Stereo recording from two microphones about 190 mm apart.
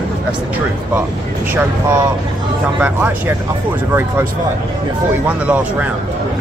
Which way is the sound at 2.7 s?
5° right (ahead or behind).